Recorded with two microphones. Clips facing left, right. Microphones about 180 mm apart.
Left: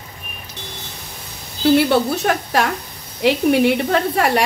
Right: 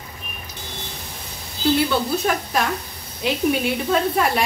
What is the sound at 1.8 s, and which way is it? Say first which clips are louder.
Speech: left 4 dB; 70° left (ahead or behind).